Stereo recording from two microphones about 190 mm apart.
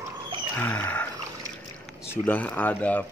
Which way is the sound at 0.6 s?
10° left (ahead or behind).